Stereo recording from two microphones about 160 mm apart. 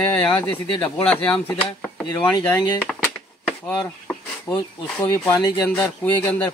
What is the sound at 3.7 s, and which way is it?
Speech, 5° left (ahead or behind).